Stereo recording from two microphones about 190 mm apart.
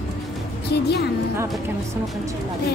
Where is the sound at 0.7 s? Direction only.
60° left (ahead or behind).